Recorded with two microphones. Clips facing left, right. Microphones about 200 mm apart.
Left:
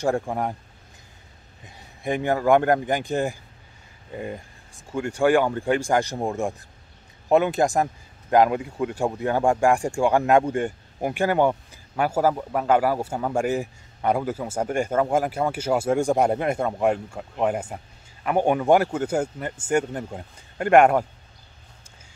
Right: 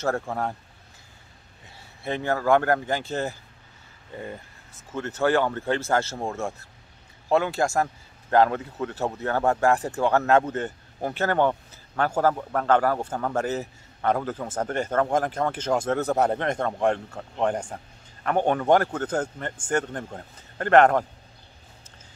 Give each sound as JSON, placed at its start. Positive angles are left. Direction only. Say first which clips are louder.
{"t": 0.0, "sound": "a man's voice", "louder": "left 3 dB", "side_deg": 15}
{"t": 1.8, "sound": "a man's voice", "louder": "left 4 dB", "side_deg": 15}